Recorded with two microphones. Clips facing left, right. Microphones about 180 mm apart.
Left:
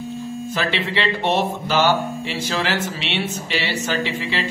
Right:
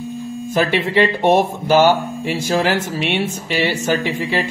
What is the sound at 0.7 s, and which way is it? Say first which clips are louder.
Speech: right 5 dB; 50° right (ahead or behind).